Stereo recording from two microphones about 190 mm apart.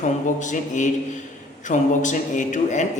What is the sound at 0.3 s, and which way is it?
A man's voice, 40° left (ahead or behind).